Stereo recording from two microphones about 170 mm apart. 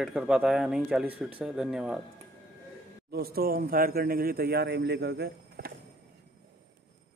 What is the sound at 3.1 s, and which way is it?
Speech, 65° right (ahead or behind).